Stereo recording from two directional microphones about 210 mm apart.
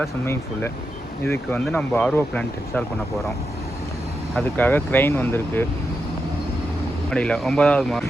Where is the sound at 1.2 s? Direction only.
10° left (ahead or behind).